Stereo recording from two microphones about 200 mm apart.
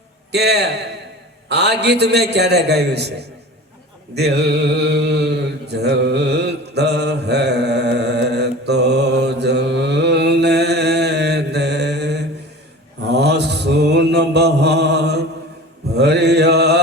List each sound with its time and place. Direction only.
0.3 s a man's voice: 55° right (ahead or behind)
4.1 s mantra: 55° right (ahead or behind)